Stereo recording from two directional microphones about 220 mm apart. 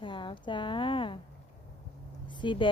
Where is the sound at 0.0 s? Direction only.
20° left (ahead or behind).